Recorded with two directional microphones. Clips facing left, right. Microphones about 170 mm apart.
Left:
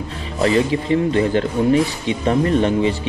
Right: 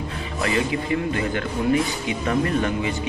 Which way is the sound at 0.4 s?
30° left (ahead or behind).